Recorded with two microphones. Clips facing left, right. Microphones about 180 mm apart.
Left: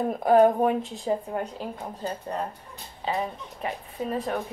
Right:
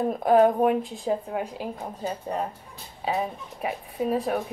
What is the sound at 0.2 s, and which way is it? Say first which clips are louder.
A woman's voice: even; centre (ahead or behind).